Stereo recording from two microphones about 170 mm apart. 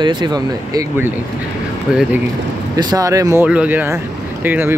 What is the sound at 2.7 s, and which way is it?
Speech, 20° right (ahead or behind).